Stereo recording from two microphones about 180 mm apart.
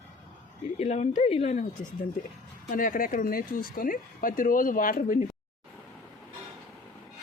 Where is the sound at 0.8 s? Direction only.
40° left (ahead or behind).